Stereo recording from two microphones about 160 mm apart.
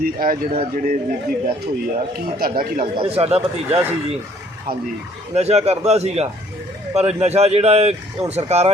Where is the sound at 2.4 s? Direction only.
65° right (ahead or behind).